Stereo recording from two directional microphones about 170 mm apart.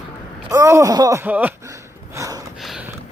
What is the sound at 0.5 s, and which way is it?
Speech, 20° right (ahead or behind).